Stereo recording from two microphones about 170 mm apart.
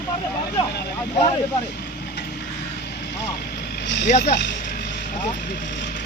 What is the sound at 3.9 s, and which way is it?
Speech, 90° left.